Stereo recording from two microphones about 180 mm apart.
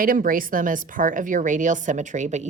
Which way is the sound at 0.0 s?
50° right (ahead or behind).